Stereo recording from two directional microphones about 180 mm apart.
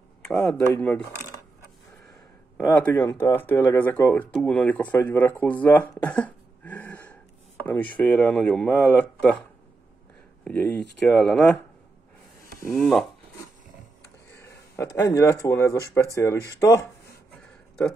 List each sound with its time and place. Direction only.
0.2 s speech: 5° left (ahead or behind)
2.5 s speech: 10° left (ahead or behind)
10.4 s speech: 5° left (ahead or behind)
12.6 s speech: centre (ahead or behind)
14.4 s speech: 15° left (ahead or behind)